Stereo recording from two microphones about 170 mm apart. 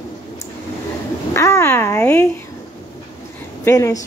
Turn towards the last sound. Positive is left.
turn(degrees=20)  # may be behind; listen again after turning